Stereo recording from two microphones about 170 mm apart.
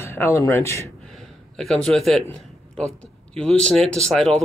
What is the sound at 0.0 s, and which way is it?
Speech, 15° left (ahead or behind).